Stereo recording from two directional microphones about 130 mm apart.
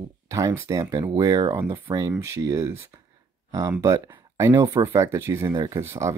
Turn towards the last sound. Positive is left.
turn(degrees=-20)  # may be behind; listen again after turning